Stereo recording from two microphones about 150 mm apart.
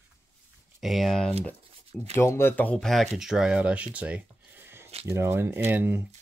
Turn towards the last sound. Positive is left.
turn(degrees=-15)  # may be behind; listen again after turning